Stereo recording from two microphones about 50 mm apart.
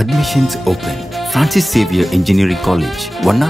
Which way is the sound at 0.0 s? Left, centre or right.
Centre.